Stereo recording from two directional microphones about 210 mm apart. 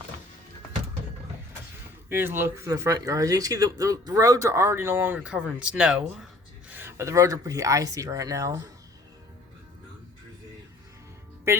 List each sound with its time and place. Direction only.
2.0 s speech: 10° right (ahead or behind)